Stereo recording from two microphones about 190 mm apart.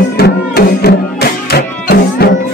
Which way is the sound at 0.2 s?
55° left (ahead or behind).